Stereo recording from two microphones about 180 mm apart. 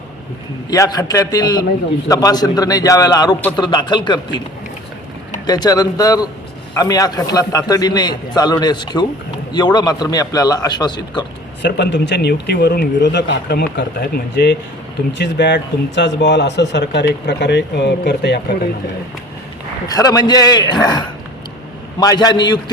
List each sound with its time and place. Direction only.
0.7 s a man's voice: 20° left (ahead or behind)
5.5 s a man's voice: 20° left (ahead or behind)
11.6 s speech: 75° left (ahead or behind)
15.2 s speech: 75° left (ahead or behind)
19.9 s a man's voice: 20° left (ahead or behind)
22.0 s a man's voice: 20° left (ahead or behind)